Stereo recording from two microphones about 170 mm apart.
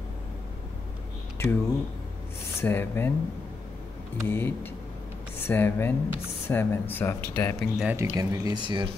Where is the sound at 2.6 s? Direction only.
10° left (ahead or behind).